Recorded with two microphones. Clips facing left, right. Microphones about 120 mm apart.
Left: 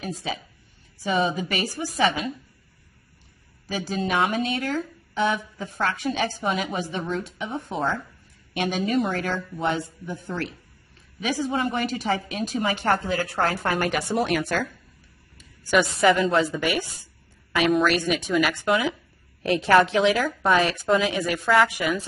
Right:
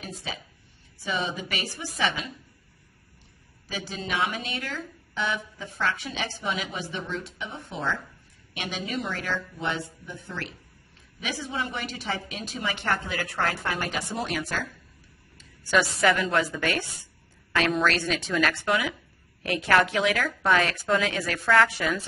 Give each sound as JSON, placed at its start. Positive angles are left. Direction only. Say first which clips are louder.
{"t": 0.0, "sound": "a woman's voice", "louder": "left 6 dB", "side_deg": 45}
{"t": 3.6, "sound": "a woman's voice", "louder": "left 7 dB", "side_deg": 45}
{"t": 13.7, "sound": "a woman's voice", "louder": "left 6 dB", "side_deg": 60}
{"t": 15.3, "sound": "a woman's voice", "louder": "left 3 dB", "side_deg": 15}
{"t": 17.5, "sound": "a sound", "louder": "left 4 dB", "side_deg": 10}
{"t": 17.8, "sound": "a woman's voice", "louder": "left 3 dB", "side_deg": 15}
{"t": 19.4, "sound": "a woman's voice", "louder": "left 4 dB", "side_deg": 30}